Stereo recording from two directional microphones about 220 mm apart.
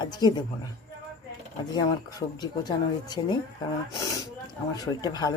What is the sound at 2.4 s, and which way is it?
Speech, 20° left (ahead or behind).